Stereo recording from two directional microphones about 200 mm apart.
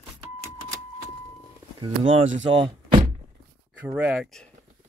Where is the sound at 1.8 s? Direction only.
25° right (ahead or behind).